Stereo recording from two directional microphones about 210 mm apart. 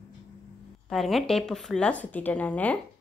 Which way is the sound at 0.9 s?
Centre (ahead or behind).